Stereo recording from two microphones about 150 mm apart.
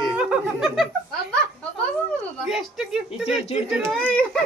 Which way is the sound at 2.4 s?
5° right (ahead or behind).